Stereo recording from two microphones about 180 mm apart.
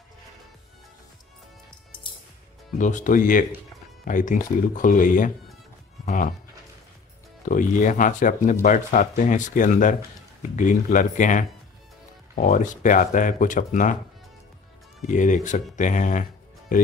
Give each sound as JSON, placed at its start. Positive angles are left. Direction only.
{"t": 2.8, "sound": "speech", "side_deg": 45}
{"t": 7.4, "sound": "speech", "side_deg": 45}
{"t": 15.0, "sound": "speech", "side_deg": 45}